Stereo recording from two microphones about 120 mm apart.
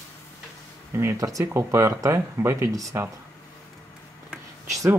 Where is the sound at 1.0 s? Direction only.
25° right (ahead or behind).